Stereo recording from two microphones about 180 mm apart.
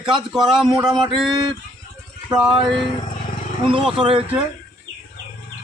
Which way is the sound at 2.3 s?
5° right (ahead or behind).